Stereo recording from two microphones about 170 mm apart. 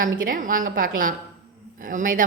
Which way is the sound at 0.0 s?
55° right (ahead or behind).